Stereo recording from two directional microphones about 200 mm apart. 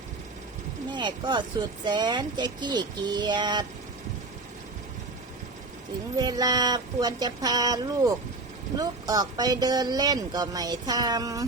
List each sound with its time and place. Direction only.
0.9 s speech: 20° right (ahead or behind)
6.1 s speech: 20° right (ahead or behind)